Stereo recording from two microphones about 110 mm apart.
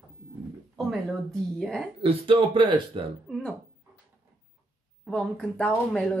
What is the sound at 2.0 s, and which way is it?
Speech, 55° right (ahead or behind).